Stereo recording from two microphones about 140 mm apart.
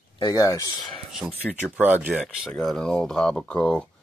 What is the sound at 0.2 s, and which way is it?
Speech, 25° left (ahead or behind).